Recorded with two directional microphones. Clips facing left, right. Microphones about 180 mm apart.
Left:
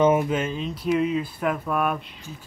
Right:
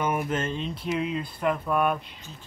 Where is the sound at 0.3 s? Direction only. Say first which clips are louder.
Left 3 dB; 10° left (ahead or behind).